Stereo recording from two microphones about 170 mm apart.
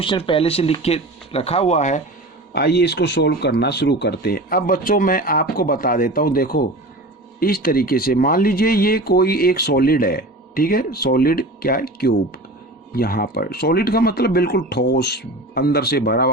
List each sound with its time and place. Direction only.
0.0 s speech: 30° left (ahead or behind)
2.5 s speech: 70° left (ahead or behind)